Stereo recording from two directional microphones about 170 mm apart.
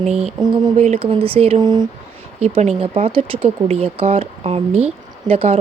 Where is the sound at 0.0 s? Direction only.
40° right (ahead or behind).